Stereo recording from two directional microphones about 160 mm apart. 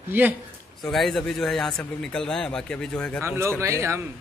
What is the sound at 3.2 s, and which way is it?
Speech, 15° right (ahead or behind).